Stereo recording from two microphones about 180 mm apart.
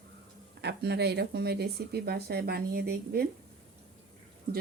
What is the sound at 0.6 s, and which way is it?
A woman's voice, 65° right (ahead or behind).